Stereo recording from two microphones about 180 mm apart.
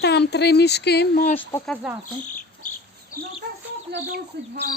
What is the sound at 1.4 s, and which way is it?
Speech, 10° left (ahead or behind).